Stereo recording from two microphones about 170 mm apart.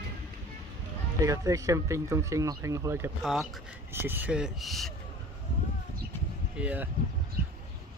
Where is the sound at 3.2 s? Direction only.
Centre (ahead or behind).